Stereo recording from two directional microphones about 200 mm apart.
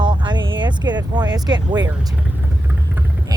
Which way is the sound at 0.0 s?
25° right (ahead or behind).